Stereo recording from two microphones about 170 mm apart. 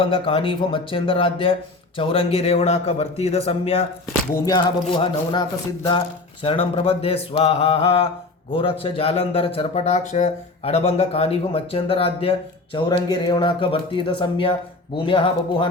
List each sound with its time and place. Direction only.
0.0 s speech: 30° left (ahead or behind)
4.3 s speech: 20° left (ahead or behind)